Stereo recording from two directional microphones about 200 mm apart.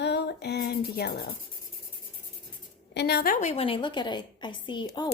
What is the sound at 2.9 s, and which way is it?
Speech, 55° left (ahead or behind).